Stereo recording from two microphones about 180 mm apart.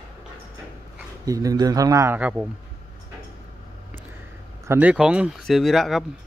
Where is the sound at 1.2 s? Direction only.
20° right (ahead or behind).